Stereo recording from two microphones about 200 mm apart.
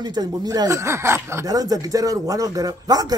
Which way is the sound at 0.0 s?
20° right (ahead or behind).